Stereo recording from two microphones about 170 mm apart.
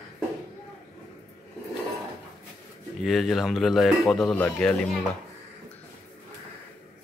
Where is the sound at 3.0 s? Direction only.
Centre (ahead or behind).